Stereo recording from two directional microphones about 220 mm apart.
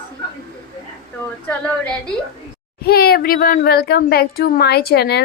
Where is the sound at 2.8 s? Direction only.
45° left (ahead or behind).